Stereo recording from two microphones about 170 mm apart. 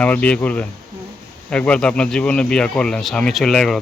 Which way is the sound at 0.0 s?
10° left (ahead or behind).